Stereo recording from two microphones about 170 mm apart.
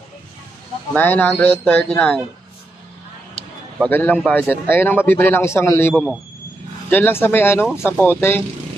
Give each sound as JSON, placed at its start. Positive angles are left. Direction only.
{"t": 0.9, "sound": "a man's voice", "side_deg": 10}
{"t": 3.8, "sound": "a man's voice", "side_deg": 10}